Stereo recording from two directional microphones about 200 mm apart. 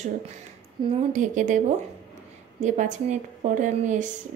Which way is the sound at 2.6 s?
35° right (ahead or behind).